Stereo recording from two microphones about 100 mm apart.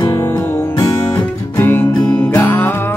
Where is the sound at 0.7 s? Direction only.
45° left (ahead or behind).